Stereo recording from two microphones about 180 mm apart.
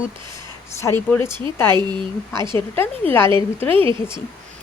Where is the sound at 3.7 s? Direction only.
30° right (ahead or behind).